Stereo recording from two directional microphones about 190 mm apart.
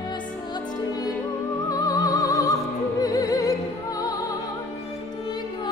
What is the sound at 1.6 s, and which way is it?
Opera, 20° left (ahead or behind).